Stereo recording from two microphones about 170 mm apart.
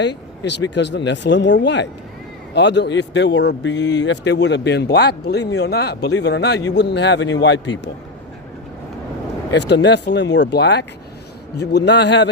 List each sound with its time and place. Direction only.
0.0 s a man's voice: 90° left
9.5 s a man's voice: 90° left